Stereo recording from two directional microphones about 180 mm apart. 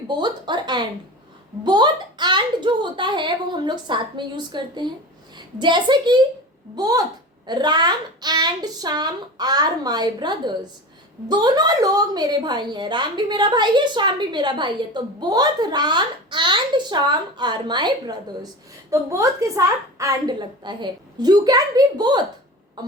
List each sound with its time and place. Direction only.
0.1 s a woman's voice: 25° right (ahead or behind)